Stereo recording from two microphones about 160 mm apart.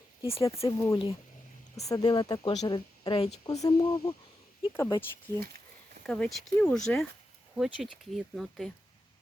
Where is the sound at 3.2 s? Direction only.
40° left (ahead or behind).